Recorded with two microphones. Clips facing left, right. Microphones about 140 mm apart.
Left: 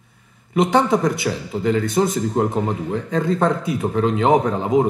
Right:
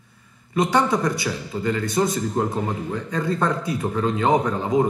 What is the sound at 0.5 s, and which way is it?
Speech, 20° left (ahead or behind).